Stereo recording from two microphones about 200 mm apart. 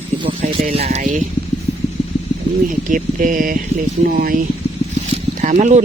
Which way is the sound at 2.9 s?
40° right (ahead or behind).